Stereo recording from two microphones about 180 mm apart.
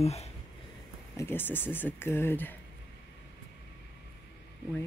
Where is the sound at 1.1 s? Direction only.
15° left (ahead or behind).